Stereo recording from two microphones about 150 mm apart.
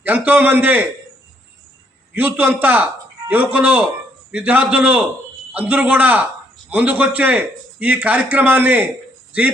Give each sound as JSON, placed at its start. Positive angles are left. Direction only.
{"t": 0.0, "sound": "a man's voice", "side_deg": -10}
{"t": 2.1, "sound": "a man's voice", "side_deg": -10}